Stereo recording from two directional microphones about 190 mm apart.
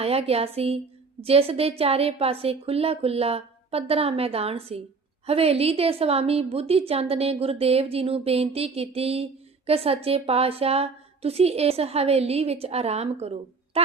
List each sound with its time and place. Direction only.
0.0 s a woman's voice: 30° right (ahead or behind)